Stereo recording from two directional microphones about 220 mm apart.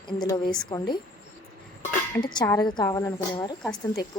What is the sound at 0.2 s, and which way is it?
Speech, 20° left (ahead or behind).